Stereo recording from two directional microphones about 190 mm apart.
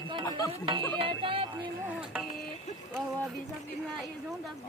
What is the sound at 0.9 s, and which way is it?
Music, 30° right (ahead or behind).